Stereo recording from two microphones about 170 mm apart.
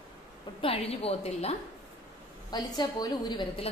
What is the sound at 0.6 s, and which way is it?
Speech, 35° left (ahead or behind).